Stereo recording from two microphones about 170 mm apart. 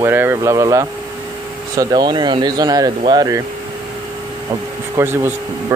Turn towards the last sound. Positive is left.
turn(degrees=-15)  # may be behind; listen again after turning